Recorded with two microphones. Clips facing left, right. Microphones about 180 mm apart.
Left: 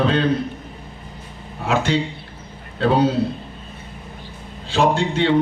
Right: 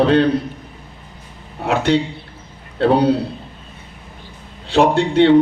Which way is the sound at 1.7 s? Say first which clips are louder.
Right 3 dB; 60° right (ahead or behind).